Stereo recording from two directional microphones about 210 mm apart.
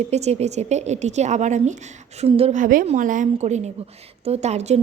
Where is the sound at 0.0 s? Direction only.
30° right (ahead or behind).